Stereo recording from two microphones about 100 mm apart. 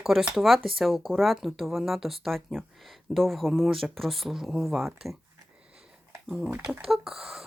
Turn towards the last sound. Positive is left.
turn(degrees=-5)  # may be behind; listen again after turning